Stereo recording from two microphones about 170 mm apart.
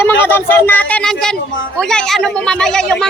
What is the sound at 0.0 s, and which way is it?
Speech, 15° left (ahead or behind).